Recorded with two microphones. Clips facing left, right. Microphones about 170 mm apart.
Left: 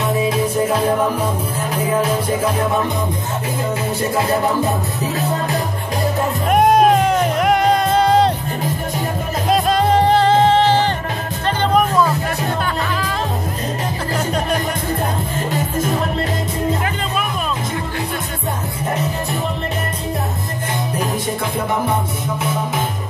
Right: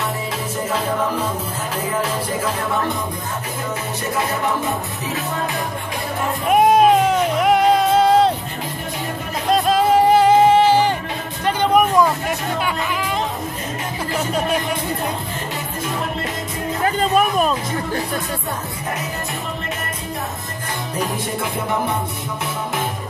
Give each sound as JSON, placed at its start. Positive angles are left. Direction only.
{"t": 6.5, "sound": "music", "side_deg": 0}
{"t": 9.5, "sound": "music", "side_deg": -5}
{"t": 14.1, "sound": "speech", "side_deg": -5}
{"t": 16.8, "sound": "music", "side_deg": -40}